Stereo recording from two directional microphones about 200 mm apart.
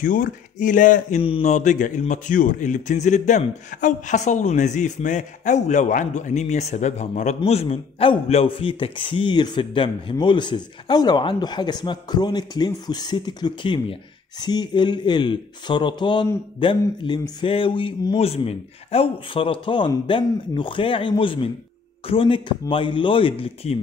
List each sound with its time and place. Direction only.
0.0 s speech: 40° left (ahead or behind)